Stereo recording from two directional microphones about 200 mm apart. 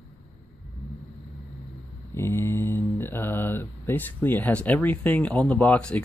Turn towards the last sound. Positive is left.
turn(degrees=5)  # may be behind; listen again after turning